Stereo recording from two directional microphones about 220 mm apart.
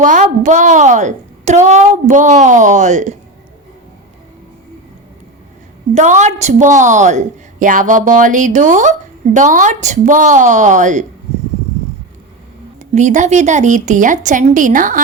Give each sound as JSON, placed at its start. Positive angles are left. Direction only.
{"t": 0.0, "sound": "a woman's voice", "side_deg": -35}
{"t": 5.9, "sound": "a woman's voice", "side_deg": -35}
{"t": 12.9, "sound": "a woman's voice", "side_deg": -35}